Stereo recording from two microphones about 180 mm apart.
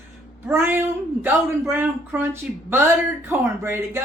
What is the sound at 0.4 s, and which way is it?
Speech, 10° right (ahead or behind).